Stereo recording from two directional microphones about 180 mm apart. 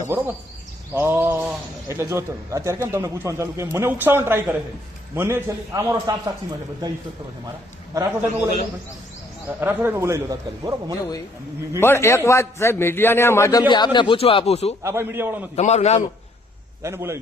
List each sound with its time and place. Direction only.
0.9 s speech: 15° right (ahead or behind)
7.9 s speech: 15° right (ahead or behind)
9.6 s speech: 10° right (ahead or behind)
11.8 s a man's voice: 15° left (ahead or behind); by 14.8 s 35° left (ahead or behind)
14.8 s speech: 15° right (ahead or behind)
15.5 s a man's voice: 40° left (ahead or behind)
16.8 s speech: 15° right (ahead or behind)